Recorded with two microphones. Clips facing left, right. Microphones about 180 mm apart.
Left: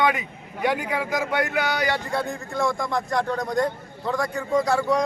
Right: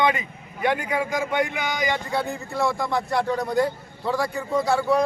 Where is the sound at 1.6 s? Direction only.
15° right (ahead or behind).